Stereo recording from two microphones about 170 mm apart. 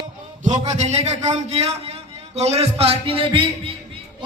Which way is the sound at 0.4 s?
40° right (ahead or behind).